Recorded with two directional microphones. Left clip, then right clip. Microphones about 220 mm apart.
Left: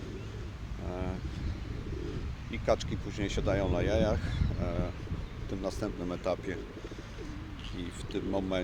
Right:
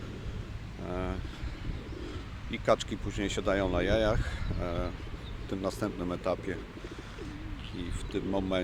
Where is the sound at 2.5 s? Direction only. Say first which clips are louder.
Right 2 dB; 15° right (ahead or behind).